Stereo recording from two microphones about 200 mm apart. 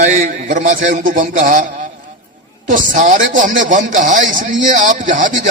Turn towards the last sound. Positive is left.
turn(degrees=-40)  # may be behind; listen again after turning